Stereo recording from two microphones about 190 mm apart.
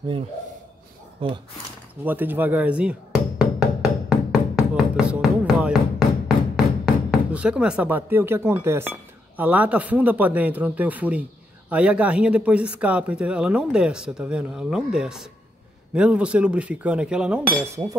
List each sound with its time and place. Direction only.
1.2 s speech: 30° right (ahead or behind)
2.0 s speech: 10° right (ahead or behind)
4.1 s music: 5° right (ahead or behind)
7.1 s speech: 5° right (ahead or behind)
17.6 s speech: 15° right (ahead or behind)